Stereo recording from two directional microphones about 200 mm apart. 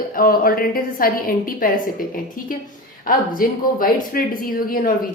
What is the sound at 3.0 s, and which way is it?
A woman's voice, 45° left (ahead or behind).